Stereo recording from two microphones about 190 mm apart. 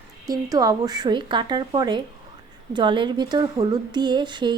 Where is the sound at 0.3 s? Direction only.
20° right (ahead or behind).